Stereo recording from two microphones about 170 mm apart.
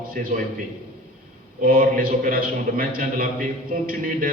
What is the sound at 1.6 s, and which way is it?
A man's voice, 55° right (ahead or behind).